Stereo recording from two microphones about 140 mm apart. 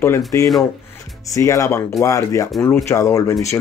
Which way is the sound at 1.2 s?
25° left (ahead or behind).